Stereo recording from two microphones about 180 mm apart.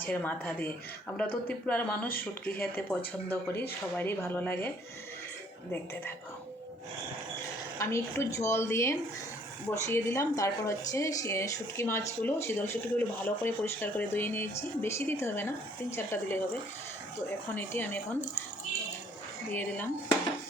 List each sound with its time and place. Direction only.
0.0 s speech: 10° left (ahead or behind)
7.8 s speech: 15° left (ahead or behind)
17.5 s speech: 10° left (ahead or behind)
19.5 s speech: 10° left (ahead or behind)